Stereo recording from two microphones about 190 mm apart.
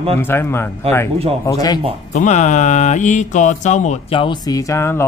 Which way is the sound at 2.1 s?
40° left (ahead or behind).